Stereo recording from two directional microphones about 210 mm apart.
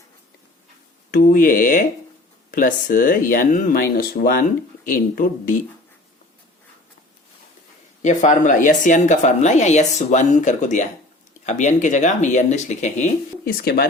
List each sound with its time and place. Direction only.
1.1 s a woman's voice: 40° left (ahead or behind)
8.0 s a woman's voice: 35° left (ahead or behind)